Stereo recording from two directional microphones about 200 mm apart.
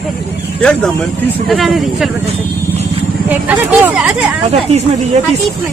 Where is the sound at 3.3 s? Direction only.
10° right (ahead or behind).